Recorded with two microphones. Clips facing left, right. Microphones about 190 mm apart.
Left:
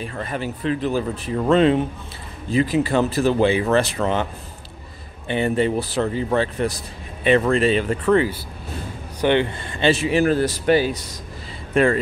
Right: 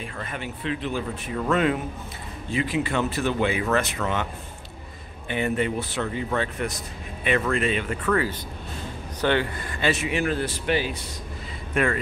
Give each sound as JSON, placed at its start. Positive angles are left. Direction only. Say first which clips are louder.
{"t": 0.0, "sound": "speech", "louder": "left 6 dB", "side_deg": 35}
{"t": 5.3, "sound": "speech", "louder": "left 5 dB", "side_deg": 30}